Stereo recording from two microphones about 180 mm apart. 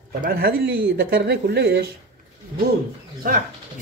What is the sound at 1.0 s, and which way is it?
Speech, 65° right (ahead or behind).